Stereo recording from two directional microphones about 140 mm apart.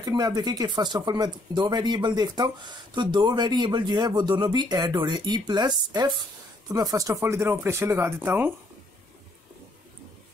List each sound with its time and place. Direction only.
0.0 s speech: 30° right (ahead or behind)